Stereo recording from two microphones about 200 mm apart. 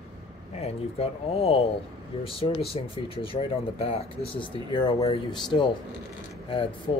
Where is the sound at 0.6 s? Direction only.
30° left (ahead or behind).